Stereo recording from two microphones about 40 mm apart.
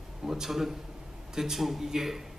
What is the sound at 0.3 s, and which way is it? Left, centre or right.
A man's voice, centre.